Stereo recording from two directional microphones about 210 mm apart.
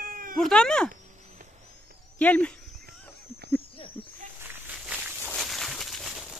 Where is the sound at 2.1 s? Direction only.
5° left (ahead or behind).